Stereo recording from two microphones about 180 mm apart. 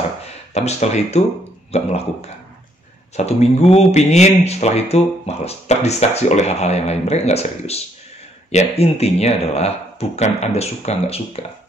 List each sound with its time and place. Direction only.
0.2 s speech: 35° left (ahead or behind)